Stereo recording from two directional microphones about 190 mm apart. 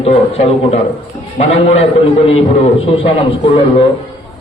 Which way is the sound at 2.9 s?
30° left (ahead or behind).